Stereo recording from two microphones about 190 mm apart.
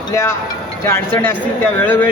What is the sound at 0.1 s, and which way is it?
Speech, 15° left (ahead or behind).